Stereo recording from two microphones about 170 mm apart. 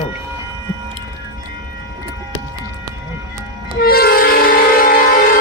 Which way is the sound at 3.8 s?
65° left (ahead or behind).